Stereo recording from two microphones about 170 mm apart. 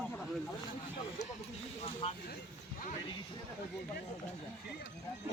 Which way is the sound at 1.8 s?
30° left (ahead or behind).